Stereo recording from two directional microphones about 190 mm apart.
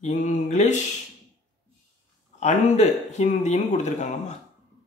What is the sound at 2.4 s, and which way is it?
A man's voice, 40° left (ahead or behind).